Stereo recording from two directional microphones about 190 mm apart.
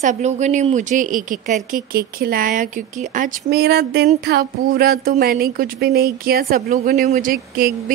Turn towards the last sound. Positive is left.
turn(degrees=-50)  # may be behind; listen again after turning